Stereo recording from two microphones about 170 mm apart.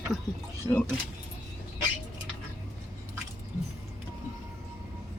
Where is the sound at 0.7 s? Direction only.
20° left (ahead or behind).